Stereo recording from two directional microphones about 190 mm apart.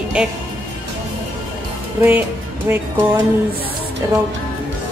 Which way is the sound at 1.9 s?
10° right (ahead or behind).